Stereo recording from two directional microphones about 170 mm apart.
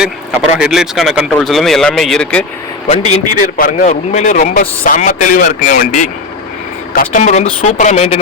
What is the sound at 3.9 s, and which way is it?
Speech, 45° left (ahead or behind).